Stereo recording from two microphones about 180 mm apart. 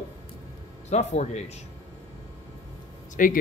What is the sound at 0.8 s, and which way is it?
Speech, 40° left (ahead or behind).